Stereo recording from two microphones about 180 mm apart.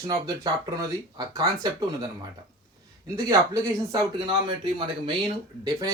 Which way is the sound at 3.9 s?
25° right (ahead or behind).